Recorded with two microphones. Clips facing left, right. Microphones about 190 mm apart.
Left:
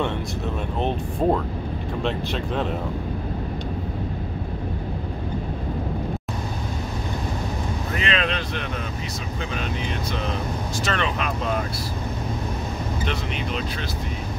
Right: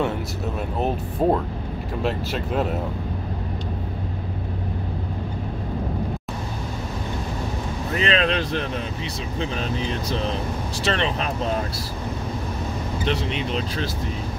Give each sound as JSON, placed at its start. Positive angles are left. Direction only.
{"t": 0.7, "sound": "speech", "side_deg": -5}
{"t": 7.9, "sound": "speech", "side_deg": -35}
{"t": 10.8, "sound": "speech", "side_deg": -35}
{"t": 13.0, "sound": "speech", "side_deg": -35}